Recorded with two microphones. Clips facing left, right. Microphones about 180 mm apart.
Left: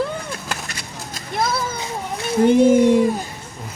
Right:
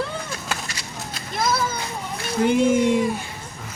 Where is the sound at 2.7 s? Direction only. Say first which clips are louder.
Left 5 dB; 55° left (ahead or behind).